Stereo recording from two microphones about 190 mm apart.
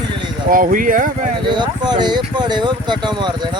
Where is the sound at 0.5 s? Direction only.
45° right (ahead or behind).